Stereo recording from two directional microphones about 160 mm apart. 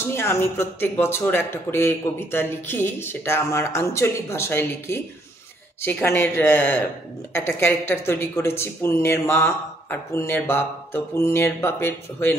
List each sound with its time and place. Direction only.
0.1 s speech: 15° left (ahead or behind)